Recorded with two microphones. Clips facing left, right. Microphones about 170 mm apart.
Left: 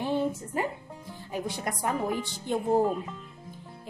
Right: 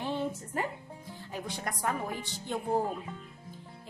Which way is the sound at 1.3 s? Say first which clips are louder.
Left 5 dB; 10° left (ahead or behind).